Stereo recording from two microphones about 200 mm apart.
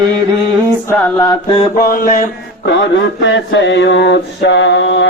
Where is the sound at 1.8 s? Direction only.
45° left (ahead or behind).